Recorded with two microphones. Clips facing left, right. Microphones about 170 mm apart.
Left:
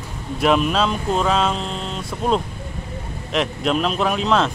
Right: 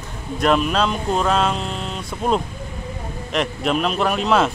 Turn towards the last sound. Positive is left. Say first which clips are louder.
# right 1 dB
turn(degrees=-5)  # may be behind; listen again after turning